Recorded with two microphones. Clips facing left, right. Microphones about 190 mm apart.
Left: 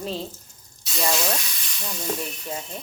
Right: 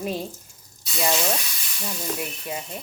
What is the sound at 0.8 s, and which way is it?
Speech, centre (ahead or behind).